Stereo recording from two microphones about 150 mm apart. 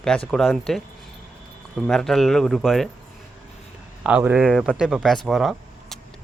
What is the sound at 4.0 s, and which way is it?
A man's voice, 10° right (ahead or behind).